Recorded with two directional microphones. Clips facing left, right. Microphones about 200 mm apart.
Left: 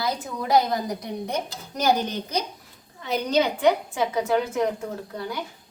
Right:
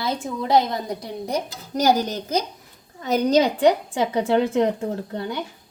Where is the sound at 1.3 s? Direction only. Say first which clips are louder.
Right 4 dB; 40° right (ahead or behind).